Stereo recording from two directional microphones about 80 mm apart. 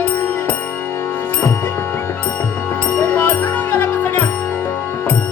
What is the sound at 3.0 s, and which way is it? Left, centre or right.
Music, left.